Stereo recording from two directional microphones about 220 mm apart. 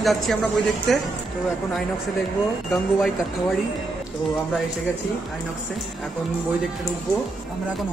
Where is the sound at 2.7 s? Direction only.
Centre (ahead or behind).